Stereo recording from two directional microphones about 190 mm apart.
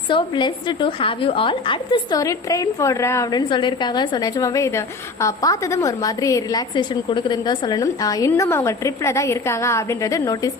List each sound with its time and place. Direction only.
0.1 s a woman's voice: 25° left (ahead or behind)